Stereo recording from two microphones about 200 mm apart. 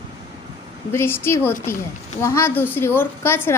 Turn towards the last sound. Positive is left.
turn(degrees=10)  # may be behind; listen again after turning